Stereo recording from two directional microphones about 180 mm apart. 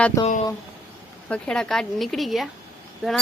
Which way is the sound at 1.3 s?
5° left (ahead or behind).